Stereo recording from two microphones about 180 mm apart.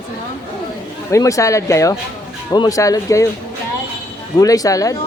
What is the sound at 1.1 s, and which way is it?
A woman's voice, 15° left (ahead or behind).